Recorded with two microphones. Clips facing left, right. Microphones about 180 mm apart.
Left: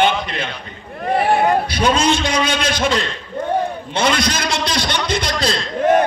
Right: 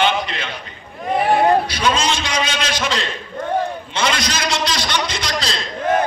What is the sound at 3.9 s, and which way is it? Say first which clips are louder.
A man's voice: left 5 dB; 55° left (ahead or behind).